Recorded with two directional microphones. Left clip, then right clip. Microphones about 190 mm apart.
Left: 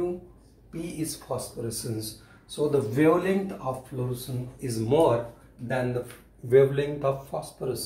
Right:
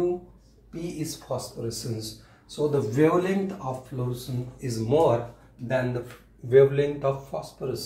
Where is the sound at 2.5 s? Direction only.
25° left (ahead or behind).